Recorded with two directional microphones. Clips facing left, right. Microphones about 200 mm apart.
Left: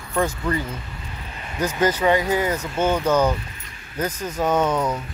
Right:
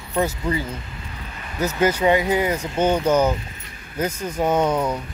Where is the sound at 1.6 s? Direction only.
10° right (ahead or behind).